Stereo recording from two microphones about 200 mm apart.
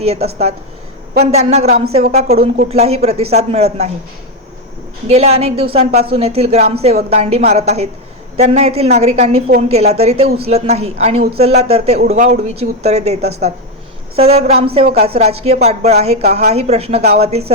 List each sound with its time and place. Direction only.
0.0 s a woman's voice: 30° right (ahead or behind)
5.0 s a woman's voice: 30° right (ahead or behind)